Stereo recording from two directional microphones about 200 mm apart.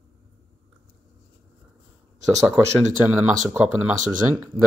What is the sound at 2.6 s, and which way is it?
Speech, 10° right (ahead or behind).